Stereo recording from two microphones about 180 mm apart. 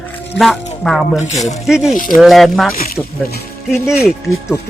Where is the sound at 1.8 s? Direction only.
50° left (ahead or behind).